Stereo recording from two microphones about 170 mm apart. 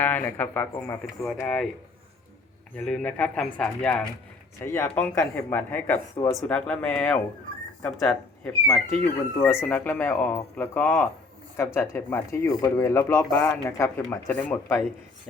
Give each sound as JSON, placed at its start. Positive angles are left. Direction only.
{"t": 0.0, "sound": "speech", "side_deg": 10}
{"t": 2.7, "sound": "speech", "side_deg": 5}